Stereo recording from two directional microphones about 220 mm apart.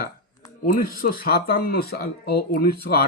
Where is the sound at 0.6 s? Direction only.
40° left (ahead or behind).